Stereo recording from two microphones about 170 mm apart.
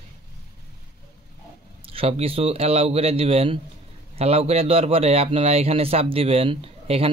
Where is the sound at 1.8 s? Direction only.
35° right (ahead or behind).